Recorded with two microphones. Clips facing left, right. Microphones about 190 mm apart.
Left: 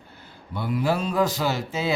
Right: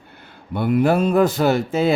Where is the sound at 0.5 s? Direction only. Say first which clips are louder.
Right 8 dB; 55° right (ahead or behind).